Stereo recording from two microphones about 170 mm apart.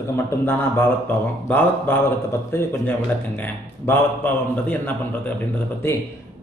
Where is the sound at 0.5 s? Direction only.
10° left (ahead or behind).